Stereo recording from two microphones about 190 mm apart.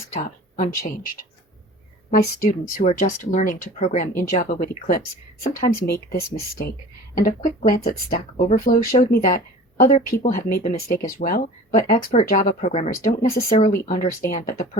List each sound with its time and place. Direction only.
0.1 s speech: 40° left (ahead or behind)
13.3 s speech: 50° left (ahead or behind)